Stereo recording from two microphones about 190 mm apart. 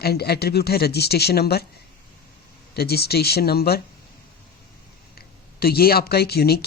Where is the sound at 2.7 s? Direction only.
55° left (ahead or behind).